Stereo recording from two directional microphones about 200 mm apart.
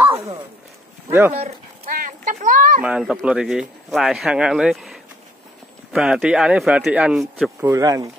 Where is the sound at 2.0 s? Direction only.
40° right (ahead or behind).